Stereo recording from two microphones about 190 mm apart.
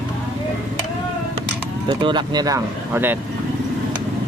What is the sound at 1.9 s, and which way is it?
Speech, 25° right (ahead or behind).